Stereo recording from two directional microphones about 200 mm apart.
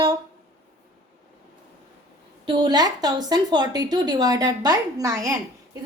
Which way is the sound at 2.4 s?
20° right (ahead or behind).